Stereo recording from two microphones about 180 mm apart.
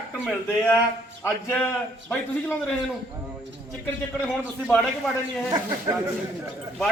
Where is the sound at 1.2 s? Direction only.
5° left (ahead or behind).